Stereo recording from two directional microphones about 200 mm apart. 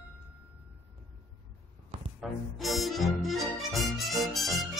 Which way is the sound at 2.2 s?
Centre (ahead or behind).